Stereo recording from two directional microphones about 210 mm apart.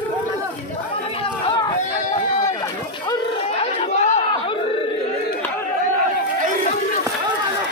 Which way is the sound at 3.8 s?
35° left (ahead or behind).